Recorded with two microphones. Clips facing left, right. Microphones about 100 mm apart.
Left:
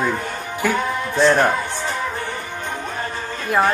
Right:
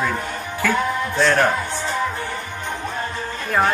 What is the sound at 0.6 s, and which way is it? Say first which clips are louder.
Music: even; 15° left (ahead or behind).